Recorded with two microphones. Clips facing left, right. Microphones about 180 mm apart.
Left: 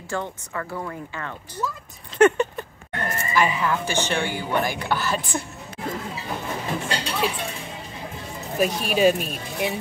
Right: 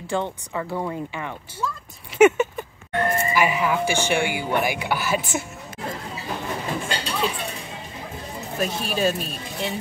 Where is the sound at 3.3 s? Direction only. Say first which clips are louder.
Left 2 dB; 10° right (ahead or behind).